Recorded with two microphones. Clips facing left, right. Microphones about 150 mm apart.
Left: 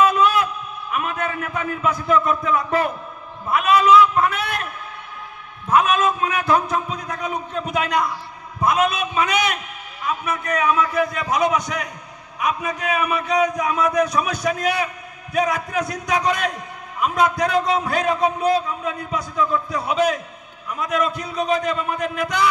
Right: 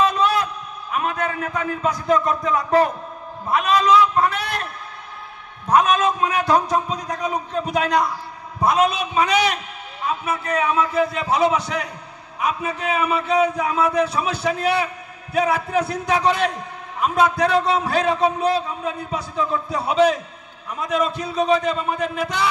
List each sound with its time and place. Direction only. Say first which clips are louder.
0.0 s a sound: left 2 dB; 35° right (ahead or behind)
0.9 s a man's voice: right 1 dB; 35° right (ahead or behind)
5.7 s a man's voice: right 1 dB; 35° right (ahead or behind)